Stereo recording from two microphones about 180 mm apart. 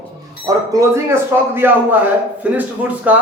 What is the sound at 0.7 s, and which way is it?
Speech, 15° right (ahead or behind).